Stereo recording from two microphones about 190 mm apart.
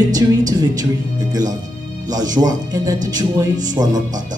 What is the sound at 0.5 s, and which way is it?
Speech, 20° right (ahead or behind).